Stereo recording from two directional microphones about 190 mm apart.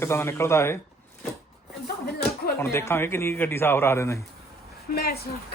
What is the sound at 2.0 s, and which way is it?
Speech, 55° left (ahead or behind).